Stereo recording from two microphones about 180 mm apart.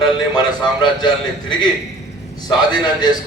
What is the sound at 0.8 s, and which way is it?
Speech, 25° left (ahead or behind).